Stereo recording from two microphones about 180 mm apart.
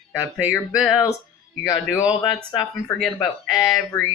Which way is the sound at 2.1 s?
20° left (ahead or behind).